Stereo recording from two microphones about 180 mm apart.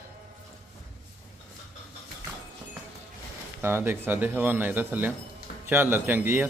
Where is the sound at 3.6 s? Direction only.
15° right (ahead or behind).